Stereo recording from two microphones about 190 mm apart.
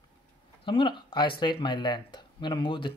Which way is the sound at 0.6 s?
25° left (ahead or behind).